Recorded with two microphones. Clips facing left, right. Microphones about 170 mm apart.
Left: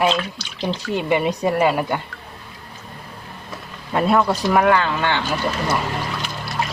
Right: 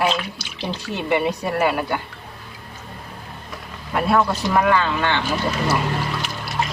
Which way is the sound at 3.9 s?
20° left (ahead or behind).